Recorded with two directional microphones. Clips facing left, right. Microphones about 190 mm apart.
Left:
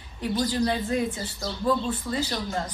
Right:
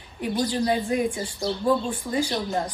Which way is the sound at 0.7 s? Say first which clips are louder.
Right 3 dB; 10° right (ahead or behind).